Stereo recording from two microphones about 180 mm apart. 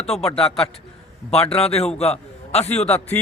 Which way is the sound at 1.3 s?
35° left (ahead or behind).